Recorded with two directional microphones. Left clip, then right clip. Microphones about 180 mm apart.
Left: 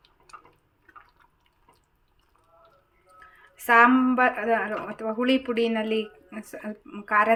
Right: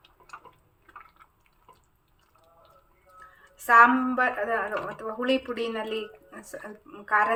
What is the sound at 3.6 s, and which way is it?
Speech, 35° left (ahead or behind).